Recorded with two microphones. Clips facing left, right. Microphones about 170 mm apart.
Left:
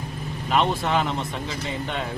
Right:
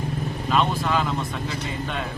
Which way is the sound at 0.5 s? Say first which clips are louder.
Left 1 dB; 25° left (ahead or behind).